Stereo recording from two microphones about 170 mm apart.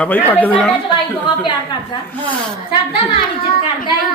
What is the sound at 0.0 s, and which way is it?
Speech, 10° left (ahead or behind).